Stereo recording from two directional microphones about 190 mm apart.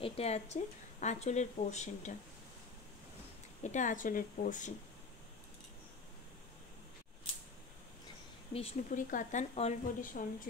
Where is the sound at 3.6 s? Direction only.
40° left (ahead or behind).